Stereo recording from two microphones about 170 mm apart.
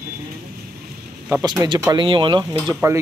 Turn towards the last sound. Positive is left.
turn(degrees=-20)  # may be behind; listen again after turning